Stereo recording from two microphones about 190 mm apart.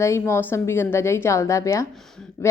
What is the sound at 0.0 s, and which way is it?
A woman's voice, 15° left (ahead or behind).